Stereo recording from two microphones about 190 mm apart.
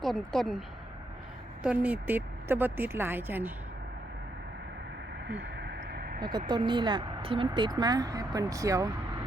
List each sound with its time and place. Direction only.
0.0 s speech: centre (ahead or behind)
1.6 s speech: 10° right (ahead or behind)
5.4 s vehicle: 60° right (ahead or behind)
6.5 s speech: 25° right (ahead or behind)